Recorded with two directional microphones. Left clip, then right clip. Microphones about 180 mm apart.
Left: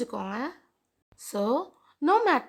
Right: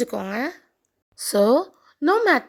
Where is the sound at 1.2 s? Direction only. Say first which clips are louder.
Right 10 dB; 35° right (ahead or behind).